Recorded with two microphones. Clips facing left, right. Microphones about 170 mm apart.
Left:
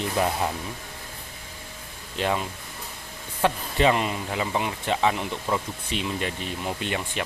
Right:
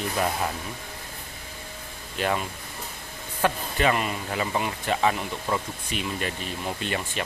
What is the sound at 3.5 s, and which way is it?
Speech, 25° left (ahead or behind).